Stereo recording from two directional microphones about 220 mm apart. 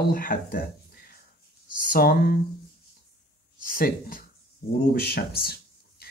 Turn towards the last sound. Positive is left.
turn(degrees=45)  # may be behind; listen again after turning